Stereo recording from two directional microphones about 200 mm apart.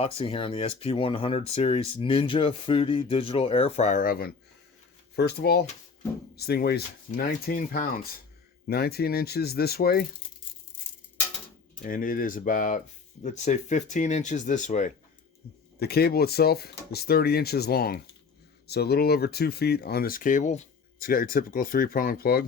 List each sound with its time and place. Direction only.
0.0 s speech: 25° left (ahead or behind); by 10.1 s 50° left (ahead or behind)
11.8 s speech: 40° left (ahead or behind)
15.8 s speech: 50° left (ahead or behind)